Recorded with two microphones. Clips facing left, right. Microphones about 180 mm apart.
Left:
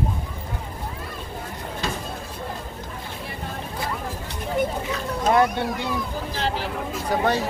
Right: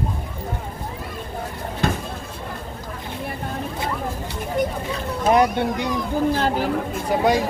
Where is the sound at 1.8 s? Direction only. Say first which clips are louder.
Right 7 dB; 55° right (ahead or behind).